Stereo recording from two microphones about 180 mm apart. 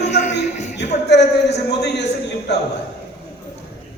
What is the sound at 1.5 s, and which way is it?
A man's voice, 70° left (ahead or behind).